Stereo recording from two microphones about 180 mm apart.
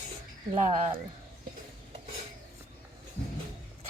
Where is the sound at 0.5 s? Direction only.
35° right (ahead or behind).